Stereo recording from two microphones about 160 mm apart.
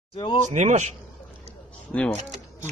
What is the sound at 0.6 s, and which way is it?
Speech, 50° right (ahead or behind).